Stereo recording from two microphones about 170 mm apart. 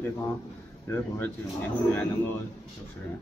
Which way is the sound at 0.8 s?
15° left (ahead or behind).